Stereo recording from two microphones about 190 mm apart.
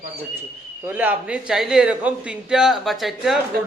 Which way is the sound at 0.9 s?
10° right (ahead or behind).